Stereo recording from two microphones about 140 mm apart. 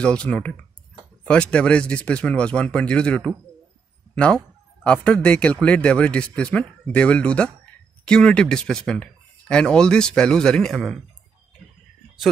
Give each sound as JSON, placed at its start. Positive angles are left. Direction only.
{"t": 0.0, "sound": "speech", "side_deg": 5}